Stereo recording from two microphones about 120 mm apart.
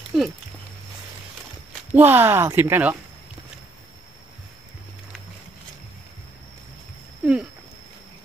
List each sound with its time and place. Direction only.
0.1 s speech: 5° right (ahead or behind)
2.0 s speech: 15° right (ahead or behind)
7.2 s a sound: 10° right (ahead or behind)